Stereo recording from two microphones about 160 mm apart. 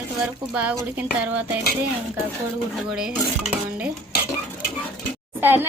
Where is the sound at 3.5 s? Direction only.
5° right (ahead or behind).